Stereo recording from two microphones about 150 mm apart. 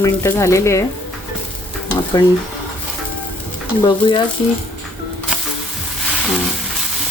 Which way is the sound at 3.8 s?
30° left (ahead or behind).